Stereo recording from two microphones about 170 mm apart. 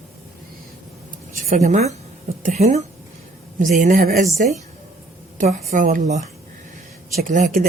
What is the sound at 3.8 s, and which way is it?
Speech, 50° right (ahead or behind).